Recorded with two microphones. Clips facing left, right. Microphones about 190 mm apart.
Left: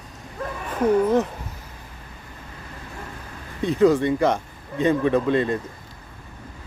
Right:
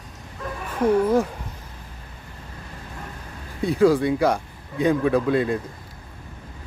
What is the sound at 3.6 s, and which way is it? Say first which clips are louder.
Speech: even; 10° right (ahead or behind).